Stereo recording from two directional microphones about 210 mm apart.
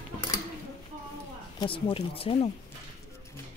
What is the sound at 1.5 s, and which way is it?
Speech, 25° left (ahead or behind).